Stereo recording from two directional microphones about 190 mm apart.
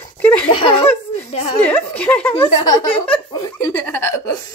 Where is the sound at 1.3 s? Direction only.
30° left (ahead or behind).